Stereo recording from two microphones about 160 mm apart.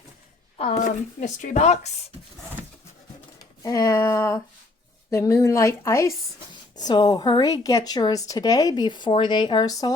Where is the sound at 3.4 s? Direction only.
20° left (ahead or behind).